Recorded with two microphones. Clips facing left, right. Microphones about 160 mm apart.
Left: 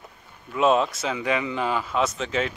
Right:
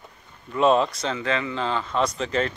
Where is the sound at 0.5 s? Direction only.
Centre (ahead or behind).